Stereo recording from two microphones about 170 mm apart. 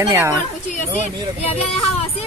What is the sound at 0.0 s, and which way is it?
Speech, 15° right (ahead or behind).